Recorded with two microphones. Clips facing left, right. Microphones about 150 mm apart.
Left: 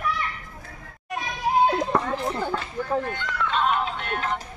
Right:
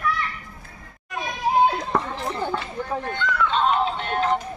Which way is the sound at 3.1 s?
30° right (ahead or behind).